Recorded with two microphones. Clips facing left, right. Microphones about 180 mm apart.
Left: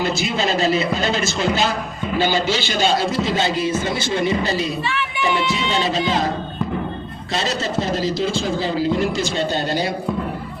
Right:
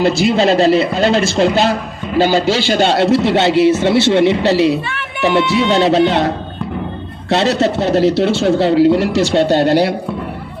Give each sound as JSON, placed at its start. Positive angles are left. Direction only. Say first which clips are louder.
{"t": 0.0, "sound": "a man's voice", "louder": "right 9 dB", "side_deg": -60}